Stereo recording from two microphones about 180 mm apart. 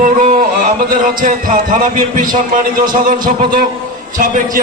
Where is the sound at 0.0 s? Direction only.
45° right (ahead or behind).